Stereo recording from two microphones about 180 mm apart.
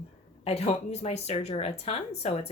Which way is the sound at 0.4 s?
35° left (ahead or behind).